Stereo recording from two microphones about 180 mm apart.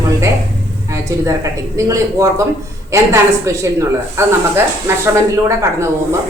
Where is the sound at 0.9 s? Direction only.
15° right (ahead or behind).